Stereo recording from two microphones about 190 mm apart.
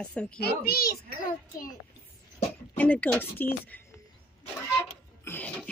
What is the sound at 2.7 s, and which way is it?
Speech, 5° left (ahead or behind).